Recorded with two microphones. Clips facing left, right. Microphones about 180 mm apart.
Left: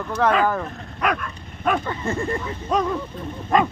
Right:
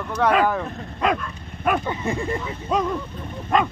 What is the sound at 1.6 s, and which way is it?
Speech, 10° right (ahead or behind).